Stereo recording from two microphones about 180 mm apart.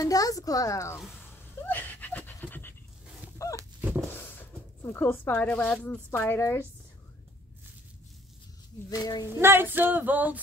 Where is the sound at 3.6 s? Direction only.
10° right (ahead or behind).